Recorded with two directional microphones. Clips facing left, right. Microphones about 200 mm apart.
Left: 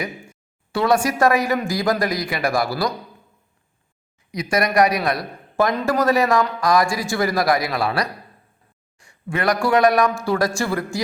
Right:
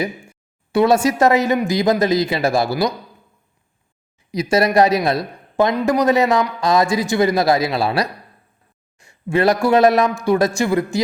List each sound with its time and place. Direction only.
0.7 s a man's voice: 20° right (ahead or behind)
4.3 s a man's voice: 25° right (ahead or behind)